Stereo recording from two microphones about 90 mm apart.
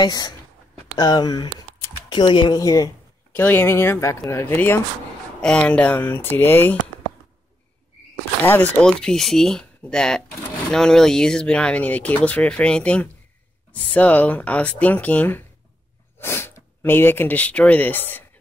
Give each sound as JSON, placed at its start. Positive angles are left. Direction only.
{"t": 0.0, "sound": "speech", "side_deg": 50}
{"t": 2.6, "sound": "speech", "side_deg": 40}
{"t": 3.3, "sound": "speech", "side_deg": 25}
{"t": 5.4, "sound": "speech", "side_deg": 10}
{"t": 8.4, "sound": "speech", "side_deg": 20}